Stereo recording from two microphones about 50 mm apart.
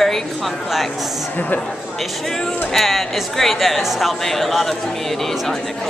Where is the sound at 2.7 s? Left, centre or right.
Centre.